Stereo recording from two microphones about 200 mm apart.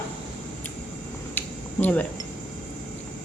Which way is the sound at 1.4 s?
10° left (ahead or behind).